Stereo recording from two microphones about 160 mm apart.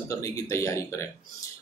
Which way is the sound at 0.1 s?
20° left (ahead or behind).